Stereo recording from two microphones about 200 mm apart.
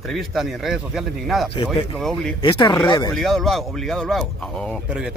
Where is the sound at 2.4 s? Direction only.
20° left (ahead or behind).